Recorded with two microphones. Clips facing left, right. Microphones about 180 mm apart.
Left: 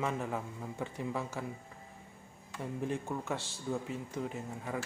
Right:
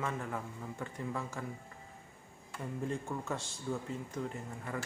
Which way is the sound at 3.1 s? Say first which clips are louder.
Left 1 dB; 15° left (ahead or behind).